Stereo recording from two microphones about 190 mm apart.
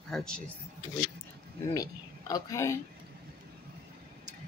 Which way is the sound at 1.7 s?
20° left (ahead or behind).